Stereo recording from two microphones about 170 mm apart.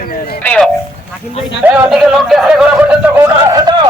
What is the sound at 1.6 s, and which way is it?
Speech, 5° right (ahead or behind).